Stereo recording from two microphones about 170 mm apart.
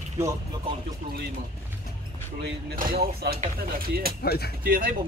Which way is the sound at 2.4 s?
55° right (ahead or behind).